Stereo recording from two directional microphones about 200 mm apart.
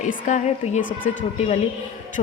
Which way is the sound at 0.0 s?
40° left (ahead or behind).